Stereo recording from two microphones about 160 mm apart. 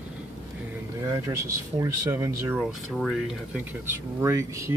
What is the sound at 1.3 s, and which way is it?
Speech, 20° right (ahead or behind).